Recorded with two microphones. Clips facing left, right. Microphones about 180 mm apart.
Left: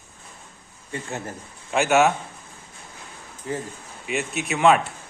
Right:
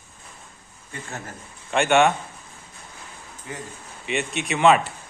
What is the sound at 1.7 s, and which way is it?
Speech, 5° left (ahead or behind).